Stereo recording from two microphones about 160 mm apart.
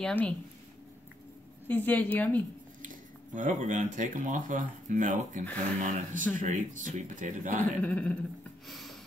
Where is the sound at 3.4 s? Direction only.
55° right (ahead or behind).